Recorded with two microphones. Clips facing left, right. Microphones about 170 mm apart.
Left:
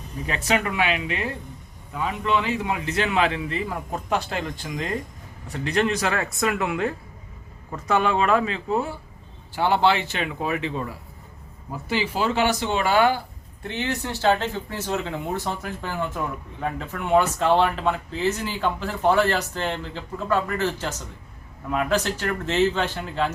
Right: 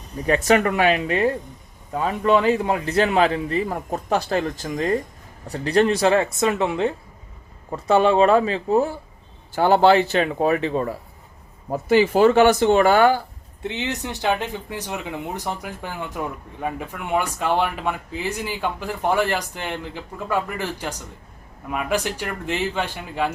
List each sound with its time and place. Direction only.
0.3 s a man's voice: 45° right (ahead or behind)
13.6 s speech: 20° right (ahead or behind)
16.6 s speech: 15° right (ahead or behind)